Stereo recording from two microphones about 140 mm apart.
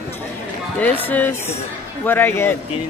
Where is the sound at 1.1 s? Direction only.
15° left (ahead or behind).